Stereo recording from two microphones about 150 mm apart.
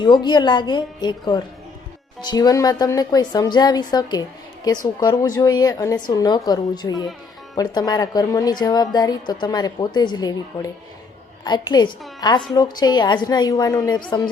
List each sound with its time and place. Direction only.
0.0 s a woman's voice: 30° left (ahead or behind)